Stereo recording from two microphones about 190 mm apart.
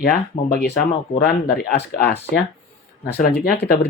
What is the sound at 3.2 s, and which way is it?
Speech, 55° left (ahead or behind).